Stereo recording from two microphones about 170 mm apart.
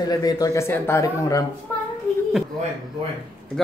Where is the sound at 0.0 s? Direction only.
20° left (ahead or behind).